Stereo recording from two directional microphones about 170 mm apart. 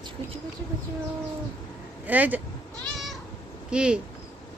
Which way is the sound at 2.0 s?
10° right (ahead or behind).